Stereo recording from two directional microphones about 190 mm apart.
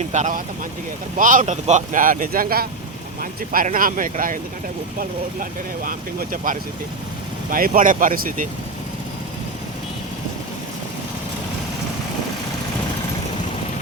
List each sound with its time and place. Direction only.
0.1 s speech: 40° right (ahead or behind)